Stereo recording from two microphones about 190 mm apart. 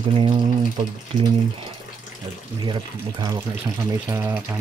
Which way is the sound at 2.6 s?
20° right (ahead or behind).